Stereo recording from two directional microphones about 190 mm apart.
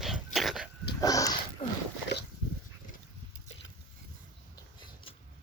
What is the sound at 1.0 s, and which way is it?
Dog, 20° left (ahead or behind).